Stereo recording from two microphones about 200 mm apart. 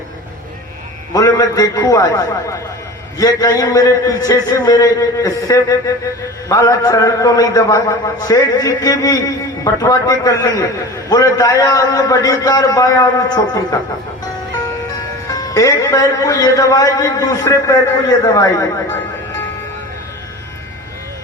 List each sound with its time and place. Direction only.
1.1 s a man's voice: 20° left (ahead or behind)
15.3 s a man's voice: 15° left (ahead or behind)